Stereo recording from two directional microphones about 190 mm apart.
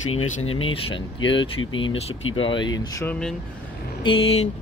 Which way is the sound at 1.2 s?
85° left.